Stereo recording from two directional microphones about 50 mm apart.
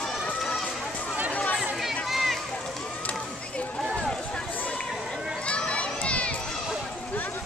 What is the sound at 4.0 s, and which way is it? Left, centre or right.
Run, centre.